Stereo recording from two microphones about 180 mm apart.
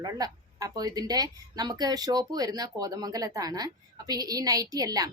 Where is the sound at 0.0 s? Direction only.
20° right (ahead or behind).